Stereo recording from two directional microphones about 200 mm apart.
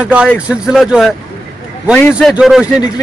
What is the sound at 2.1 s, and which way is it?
Speech, 5° right (ahead or behind).